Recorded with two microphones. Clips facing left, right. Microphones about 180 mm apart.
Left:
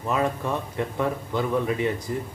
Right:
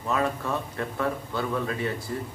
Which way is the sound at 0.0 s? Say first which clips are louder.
Left 2 dB; 20° left (ahead or behind).